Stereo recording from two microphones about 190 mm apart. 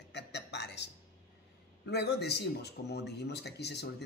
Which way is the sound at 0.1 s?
65° left (ahead or behind).